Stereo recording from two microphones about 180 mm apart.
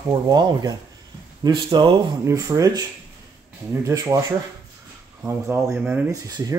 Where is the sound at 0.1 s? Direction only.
25° right (ahead or behind).